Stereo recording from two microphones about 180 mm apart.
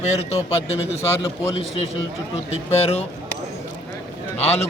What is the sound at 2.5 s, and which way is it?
Speech, 35° left (ahead or behind).